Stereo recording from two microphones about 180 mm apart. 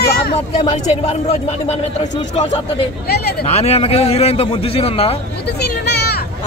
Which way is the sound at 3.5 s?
35° left (ahead or behind).